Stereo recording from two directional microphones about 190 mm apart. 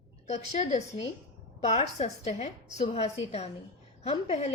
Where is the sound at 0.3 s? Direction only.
35° left (ahead or behind).